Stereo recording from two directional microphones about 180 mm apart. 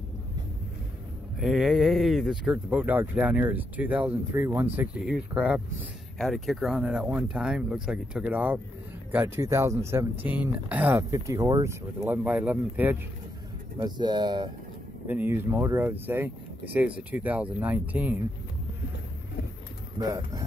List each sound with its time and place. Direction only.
1.4 s speech: centre (ahead or behind)
4.7 s speech: 5° right (ahead or behind)
13.7 s speech: 25° right (ahead or behind)
15.0 s speech: 10° right (ahead or behind)
20.0 s speech: 20° right (ahead or behind)